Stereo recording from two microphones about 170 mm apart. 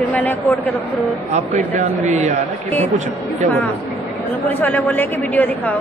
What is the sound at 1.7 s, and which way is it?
Speech, 45° right (ahead or behind).